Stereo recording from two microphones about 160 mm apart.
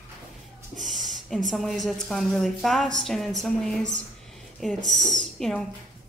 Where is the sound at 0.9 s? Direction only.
50° right (ahead or behind).